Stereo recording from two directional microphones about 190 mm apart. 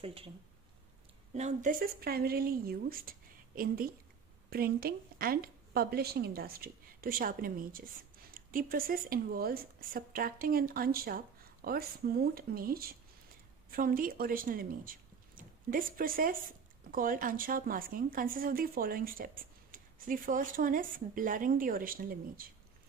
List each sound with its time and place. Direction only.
0.0 s speech: 30° right (ahead or behind)
1.3 s speech: 40° right (ahead or behind)